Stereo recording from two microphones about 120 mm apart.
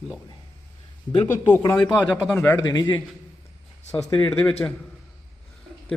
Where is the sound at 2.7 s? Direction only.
35° left (ahead or behind).